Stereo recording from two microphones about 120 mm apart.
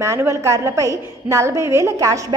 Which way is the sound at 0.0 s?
25° right (ahead or behind).